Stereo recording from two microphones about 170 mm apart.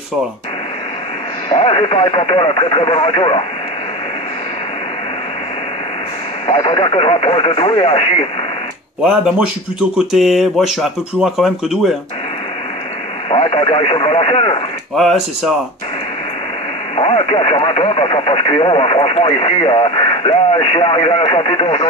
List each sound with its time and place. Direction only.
1.5 s speech: 30° left (ahead or behind)
6.4 s speech: 30° left (ahead or behind)
9.0 s speech: 5° right (ahead or behind)
13.3 s speech: 30° left (ahead or behind)
15.0 s speech: centre (ahead or behind)
16.9 s speech: 30° left (ahead or behind)